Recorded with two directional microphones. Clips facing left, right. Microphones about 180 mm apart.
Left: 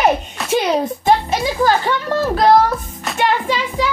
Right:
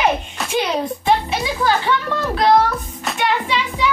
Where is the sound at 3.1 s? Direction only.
45° left (ahead or behind).